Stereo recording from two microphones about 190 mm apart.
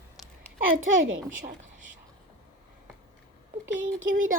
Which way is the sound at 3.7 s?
90° right.